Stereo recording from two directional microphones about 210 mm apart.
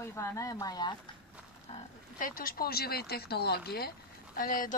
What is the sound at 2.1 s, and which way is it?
A woman's voice, 40° left (ahead or behind).